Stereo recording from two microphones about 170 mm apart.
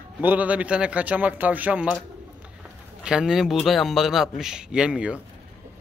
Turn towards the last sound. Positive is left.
turn(degrees=-5)  # may be behind; listen again after turning